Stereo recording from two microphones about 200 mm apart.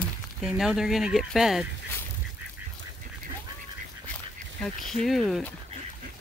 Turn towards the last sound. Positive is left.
turn(degrees=0)  # may be behind; listen again after turning